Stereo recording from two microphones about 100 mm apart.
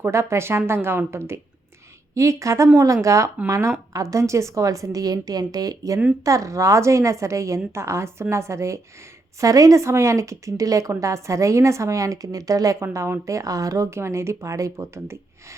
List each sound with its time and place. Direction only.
0.0 s a woman's voice: 25° right (ahead or behind)